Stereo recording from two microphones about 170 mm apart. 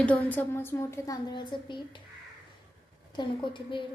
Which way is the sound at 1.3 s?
25° left (ahead or behind).